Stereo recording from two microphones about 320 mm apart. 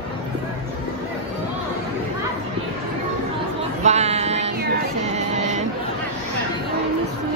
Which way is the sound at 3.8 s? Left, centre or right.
Centre.